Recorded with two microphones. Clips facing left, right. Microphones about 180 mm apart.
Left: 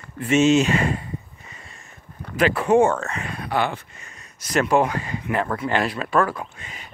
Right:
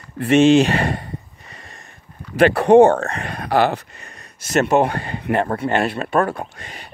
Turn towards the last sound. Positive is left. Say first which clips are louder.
# right 2 dB
turn(degrees=-30)  # may be behind; listen again after turning